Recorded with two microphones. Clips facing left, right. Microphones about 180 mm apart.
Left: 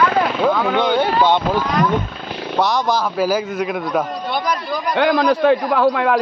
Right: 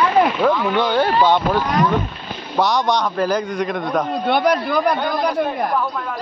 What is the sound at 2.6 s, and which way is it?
A man's voice, centre (ahead or behind).